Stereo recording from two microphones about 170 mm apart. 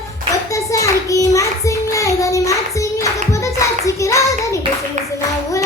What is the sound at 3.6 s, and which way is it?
Hands, 20° left (ahead or behind).